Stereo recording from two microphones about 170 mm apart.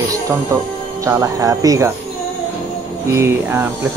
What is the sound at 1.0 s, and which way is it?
Speech, 20° right (ahead or behind).